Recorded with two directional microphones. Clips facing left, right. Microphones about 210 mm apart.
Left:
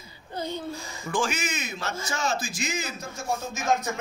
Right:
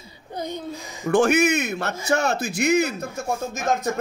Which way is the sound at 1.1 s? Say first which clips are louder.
Right 11 dB; 65° right (ahead or behind).